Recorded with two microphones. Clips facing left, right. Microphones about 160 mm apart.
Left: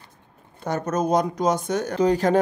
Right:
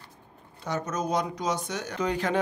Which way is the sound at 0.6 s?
50° left (ahead or behind).